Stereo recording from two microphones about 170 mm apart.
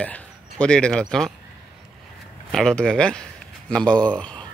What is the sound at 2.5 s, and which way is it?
Speech, 5° left (ahead or behind).